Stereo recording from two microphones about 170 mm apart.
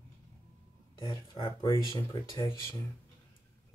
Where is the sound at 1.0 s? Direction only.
25° left (ahead or behind).